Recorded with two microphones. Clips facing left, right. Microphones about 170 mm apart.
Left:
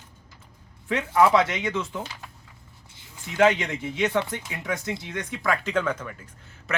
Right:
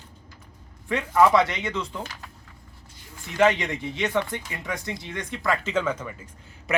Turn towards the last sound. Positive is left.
turn(degrees=-10)  # may be behind; listen again after turning